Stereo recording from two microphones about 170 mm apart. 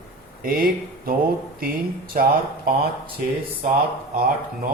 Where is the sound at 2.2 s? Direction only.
55° right (ahead or behind).